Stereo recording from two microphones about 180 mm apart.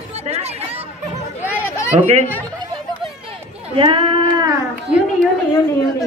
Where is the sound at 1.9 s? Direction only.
35° right (ahead or behind).